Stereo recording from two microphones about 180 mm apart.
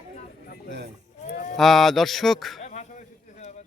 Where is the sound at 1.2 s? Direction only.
50° left (ahead or behind).